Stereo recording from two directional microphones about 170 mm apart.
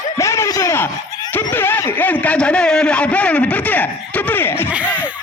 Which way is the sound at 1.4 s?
10° left (ahead or behind).